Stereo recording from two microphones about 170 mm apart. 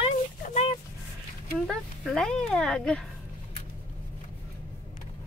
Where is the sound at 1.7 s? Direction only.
5° left (ahead or behind).